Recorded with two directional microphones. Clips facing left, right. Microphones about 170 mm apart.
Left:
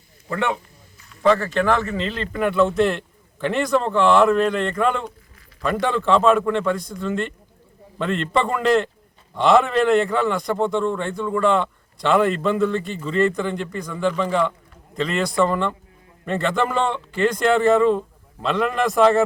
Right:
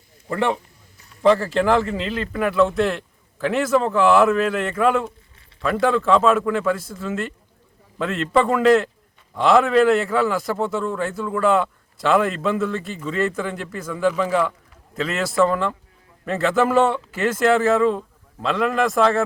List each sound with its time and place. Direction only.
1.4 s speech: 30° right (ahead or behind)
2.0 s a man's voice: 5° right (ahead or behind)